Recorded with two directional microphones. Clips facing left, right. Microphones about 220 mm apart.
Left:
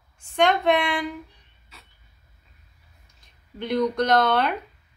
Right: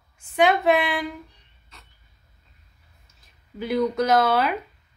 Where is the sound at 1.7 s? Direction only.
5° left (ahead or behind).